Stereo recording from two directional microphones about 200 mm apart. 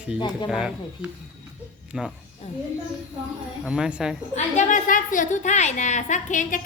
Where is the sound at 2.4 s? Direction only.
30° left (ahead or behind).